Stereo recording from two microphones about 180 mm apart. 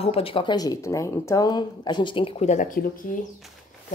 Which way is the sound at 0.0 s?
30° left (ahead or behind).